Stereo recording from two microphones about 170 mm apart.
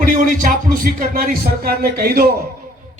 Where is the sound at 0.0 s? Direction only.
55° right (ahead or behind).